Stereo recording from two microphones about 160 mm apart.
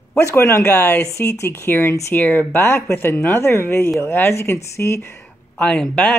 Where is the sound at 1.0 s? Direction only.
20° left (ahead or behind).